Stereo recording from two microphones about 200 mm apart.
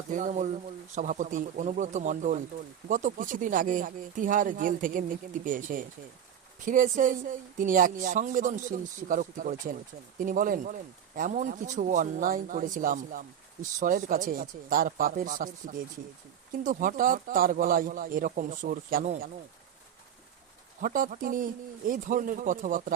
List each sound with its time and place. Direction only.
0.1 s speech: 40° right (ahead or behind)
20.8 s speech: 45° right (ahead or behind)